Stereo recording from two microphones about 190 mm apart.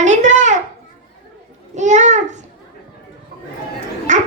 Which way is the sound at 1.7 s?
40° right (ahead or behind).